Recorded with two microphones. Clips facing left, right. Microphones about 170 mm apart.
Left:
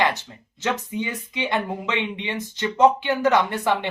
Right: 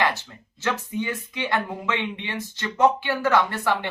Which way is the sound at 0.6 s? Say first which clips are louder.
Left 1 dB; 20° left (ahead or behind).